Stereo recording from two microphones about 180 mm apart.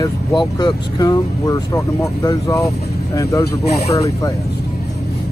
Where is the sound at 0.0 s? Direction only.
25° left (ahead or behind).